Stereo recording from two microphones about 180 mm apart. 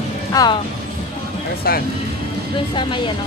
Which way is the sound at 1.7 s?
60° left (ahead or behind).